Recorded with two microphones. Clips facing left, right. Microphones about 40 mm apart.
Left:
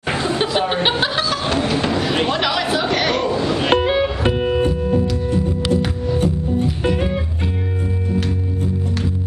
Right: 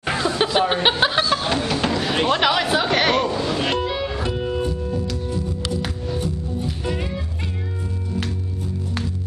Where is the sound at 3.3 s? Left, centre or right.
Centre.